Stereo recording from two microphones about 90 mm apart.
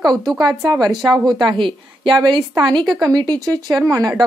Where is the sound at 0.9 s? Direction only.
55° right (ahead or behind).